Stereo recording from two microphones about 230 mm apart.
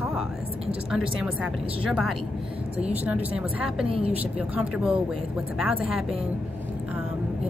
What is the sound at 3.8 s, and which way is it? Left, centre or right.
Speech, right.